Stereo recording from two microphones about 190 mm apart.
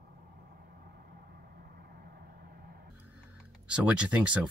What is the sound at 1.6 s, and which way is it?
Vehicle, 55° right (ahead or behind).